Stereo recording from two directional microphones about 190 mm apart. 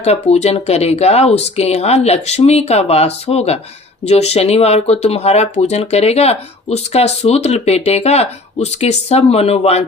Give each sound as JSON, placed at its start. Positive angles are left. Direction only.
{"t": 0.0, "sound": "speech", "side_deg": 35}